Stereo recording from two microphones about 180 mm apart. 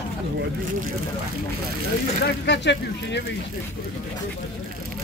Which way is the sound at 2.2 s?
75° left (ahead or behind).